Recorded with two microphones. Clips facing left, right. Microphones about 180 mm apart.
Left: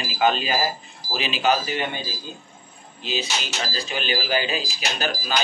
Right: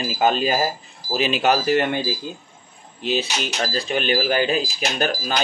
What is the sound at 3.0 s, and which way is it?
Speech, 60° right (ahead or behind).